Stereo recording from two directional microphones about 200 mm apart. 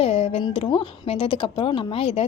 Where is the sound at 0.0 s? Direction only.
30° left (ahead or behind).